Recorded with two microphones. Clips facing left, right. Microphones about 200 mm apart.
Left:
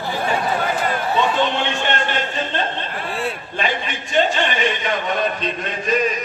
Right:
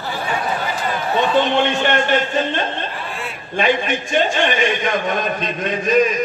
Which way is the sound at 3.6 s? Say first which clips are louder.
Right 8 dB; 50° right (ahead or behind).